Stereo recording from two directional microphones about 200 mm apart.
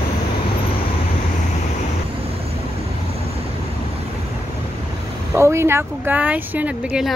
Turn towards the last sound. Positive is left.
turn(degrees=-5)  # may be behind; listen again after turning